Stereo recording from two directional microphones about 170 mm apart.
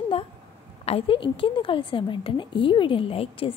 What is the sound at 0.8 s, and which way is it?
A woman's voice, 35° left (ahead or behind).